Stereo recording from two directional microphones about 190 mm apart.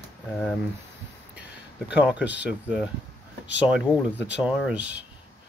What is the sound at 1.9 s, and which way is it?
Speech, 5° right (ahead or behind).